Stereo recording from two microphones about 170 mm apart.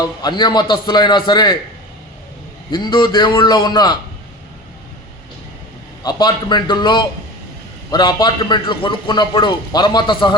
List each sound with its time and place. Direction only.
0.0 s a man's voice: 25° left (ahead or behind)
2.6 s a man's voice: 25° left (ahead or behind)
6.0 s a man's voice: 25° left (ahead or behind)